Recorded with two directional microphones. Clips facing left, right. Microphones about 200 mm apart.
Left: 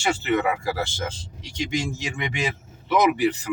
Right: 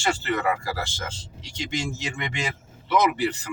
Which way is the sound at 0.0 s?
10° left (ahead or behind).